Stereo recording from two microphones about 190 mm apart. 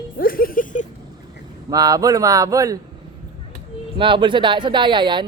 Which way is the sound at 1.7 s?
20° right (ahead or behind).